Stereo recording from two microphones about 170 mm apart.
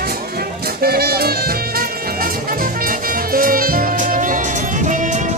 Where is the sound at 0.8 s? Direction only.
65° right (ahead or behind).